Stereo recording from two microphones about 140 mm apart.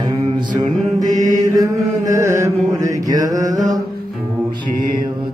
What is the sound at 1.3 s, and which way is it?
Chant, 25° right (ahead or behind).